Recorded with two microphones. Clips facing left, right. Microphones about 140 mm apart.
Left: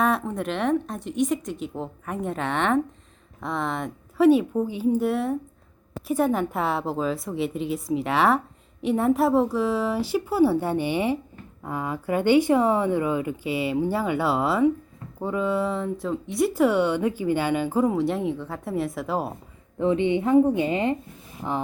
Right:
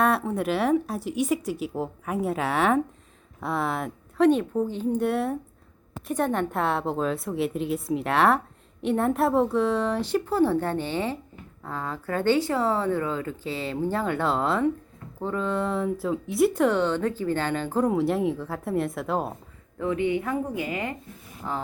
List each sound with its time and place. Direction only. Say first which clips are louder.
0.0 s speech: right 1 dB; centre (ahead or behind)
4.3 s speech: left 3 dB; 10° left (ahead or behind)
19.8 s a woman's voice: left 4 dB; 25° left (ahead or behind)